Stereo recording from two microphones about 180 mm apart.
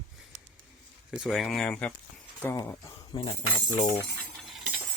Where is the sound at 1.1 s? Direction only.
5° right (ahead or behind); by 2.9 s 15° left (ahead or behind).